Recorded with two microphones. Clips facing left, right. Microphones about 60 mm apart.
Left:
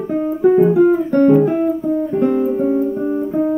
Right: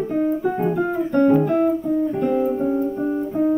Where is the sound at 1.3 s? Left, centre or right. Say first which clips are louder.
Left 4 dB; centre.